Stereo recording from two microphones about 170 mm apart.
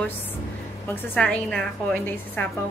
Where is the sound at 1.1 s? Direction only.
5° left (ahead or behind).